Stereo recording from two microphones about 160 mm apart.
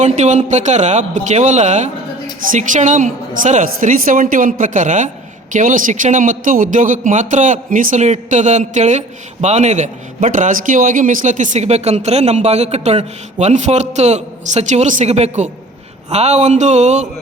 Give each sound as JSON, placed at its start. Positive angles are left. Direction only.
{"t": 0.0, "sound": "a woman's voice", "side_deg": -50}